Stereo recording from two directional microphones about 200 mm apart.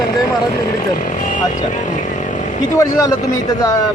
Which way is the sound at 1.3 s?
40° left (ahead or behind).